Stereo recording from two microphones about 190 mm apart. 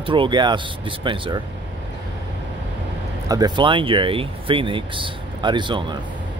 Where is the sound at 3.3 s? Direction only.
20° right (ahead or behind).